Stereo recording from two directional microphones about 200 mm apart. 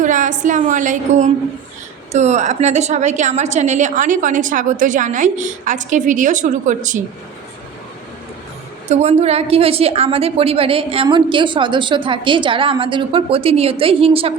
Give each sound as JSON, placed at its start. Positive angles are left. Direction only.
{"t": 0.0, "sound": "a woman's voice", "side_deg": -40}
{"t": 8.9, "sound": "a woman's voice", "side_deg": -35}